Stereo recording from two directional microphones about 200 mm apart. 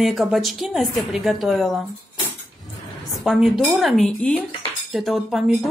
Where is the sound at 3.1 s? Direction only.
Centre (ahead or behind).